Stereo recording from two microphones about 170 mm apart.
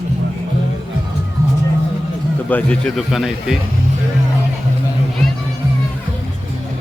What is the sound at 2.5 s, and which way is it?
Speech, 10° left (ahead or behind).